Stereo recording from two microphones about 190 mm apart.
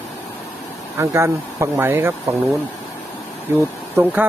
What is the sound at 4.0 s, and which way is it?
Speech, 10° right (ahead or behind).